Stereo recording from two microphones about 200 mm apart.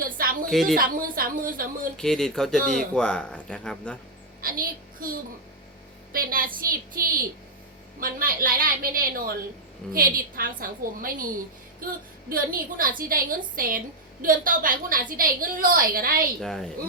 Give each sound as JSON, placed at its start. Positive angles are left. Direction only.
{"t": 0.0, "sound": "a woman's voice", "side_deg": -45}
{"t": 0.5, "sound": "speech", "side_deg": 0}
{"t": 0.8, "sound": "a woman's voice", "side_deg": -45}
{"t": 2.0, "sound": "speech", "side_deg": 0}
{"t": 4.4, "sound": "a child's voice", "side_deg": -45}
{"t": 16.4, "sound": "speech", "side_deg": 0}